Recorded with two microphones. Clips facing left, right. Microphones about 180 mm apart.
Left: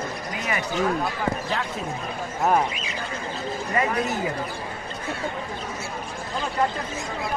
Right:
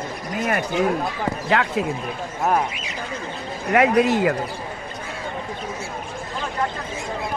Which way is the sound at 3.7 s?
75° right (ahead or behind).